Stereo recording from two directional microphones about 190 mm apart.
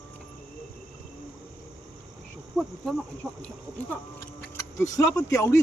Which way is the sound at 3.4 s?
10° left (ahead or behind).